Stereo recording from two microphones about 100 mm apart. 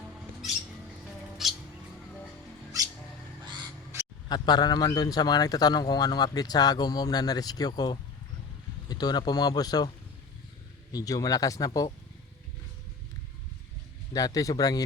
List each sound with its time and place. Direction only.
1.0 s music: centre (ahead or behind)
4.3 s a man's voice: 45° left (ahead or behind)
10.9 s a man's voice: 35° left (ahead or behind)
14.1 s a man's voice: 35° left (ahead or behind)